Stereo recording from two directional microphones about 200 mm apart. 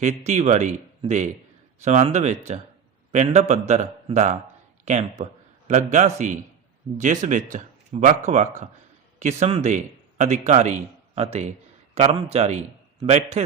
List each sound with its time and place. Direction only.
0.0 s a man's voice: 35° right (ahead or behind)